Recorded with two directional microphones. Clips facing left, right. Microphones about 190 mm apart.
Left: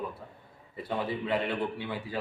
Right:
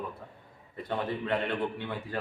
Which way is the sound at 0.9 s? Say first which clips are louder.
Even; 5° left (ahead or behind).